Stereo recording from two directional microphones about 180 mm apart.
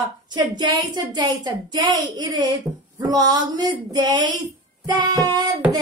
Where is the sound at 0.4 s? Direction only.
25° right (ahead or behind).